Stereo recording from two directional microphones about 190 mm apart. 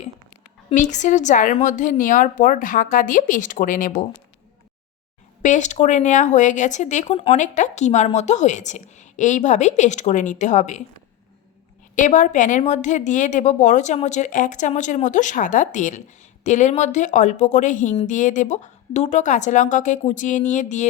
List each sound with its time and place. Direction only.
0.7 s a woman's voice: 40° left (ahead or behind)
5.4 s speech: 40° left (ahead or behind)
11.9 s speech: 40° left (ahead or behind)